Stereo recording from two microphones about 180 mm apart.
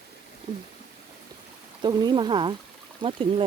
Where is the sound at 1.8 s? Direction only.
25° right (ahead or behind).